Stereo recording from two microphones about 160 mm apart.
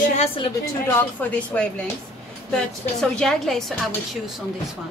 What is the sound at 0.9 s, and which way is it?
A woman's voice, 10° left (ahead or behind).